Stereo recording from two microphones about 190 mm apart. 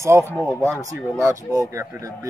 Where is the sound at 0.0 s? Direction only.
15° right (ahead or behind).